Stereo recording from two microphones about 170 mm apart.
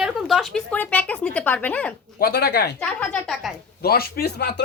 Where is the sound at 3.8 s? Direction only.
65° left (ahead or behind).